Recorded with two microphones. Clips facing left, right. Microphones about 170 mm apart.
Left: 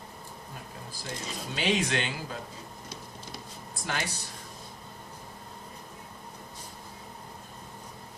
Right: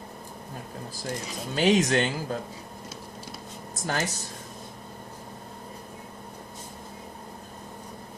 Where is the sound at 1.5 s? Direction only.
45° right (ahead or behind).